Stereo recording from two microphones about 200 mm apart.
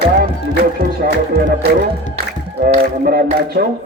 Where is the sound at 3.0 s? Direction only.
50° right (ahead or behind).